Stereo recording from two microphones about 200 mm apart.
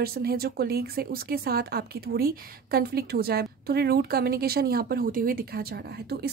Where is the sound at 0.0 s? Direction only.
50° right (ahead or behind).